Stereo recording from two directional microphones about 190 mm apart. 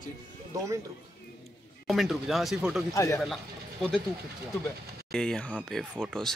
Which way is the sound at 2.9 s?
15° left (ahead or behind).